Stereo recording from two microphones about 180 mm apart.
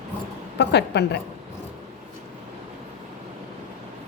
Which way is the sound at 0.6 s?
70° left (ahead or behind).